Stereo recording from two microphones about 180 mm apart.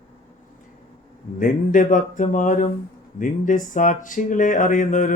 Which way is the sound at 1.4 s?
50° left (ahead or behind).